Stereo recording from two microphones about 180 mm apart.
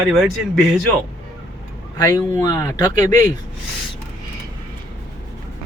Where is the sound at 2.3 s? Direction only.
15° left (ahead or behind).